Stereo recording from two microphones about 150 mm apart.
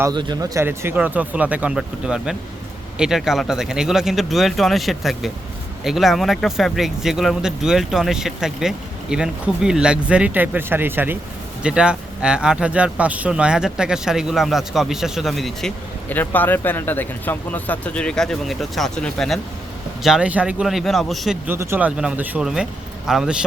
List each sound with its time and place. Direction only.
0.1 s speech: 30° right (ahead or behind); by 15.7 s centre (ahead or behind)
16.0 s speech: 10° left (ahead or behind)
21.4 s speech: 15° right (ahead or behind)